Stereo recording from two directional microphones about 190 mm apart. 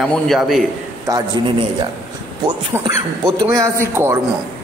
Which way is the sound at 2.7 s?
10° right (ahead or behind).